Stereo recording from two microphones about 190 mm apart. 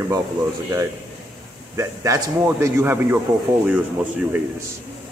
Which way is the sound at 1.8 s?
15° right (ahead or behind).